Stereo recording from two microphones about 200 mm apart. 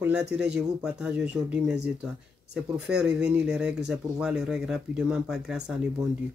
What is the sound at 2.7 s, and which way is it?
Speech, 5° right (ahead or behind).